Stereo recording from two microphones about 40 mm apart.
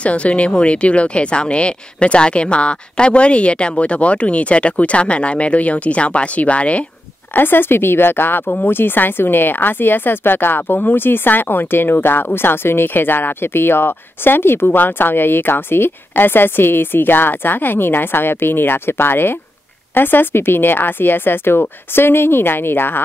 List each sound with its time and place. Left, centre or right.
0.0 s speech: left
7.3 s speech: left
19.9 s speech: left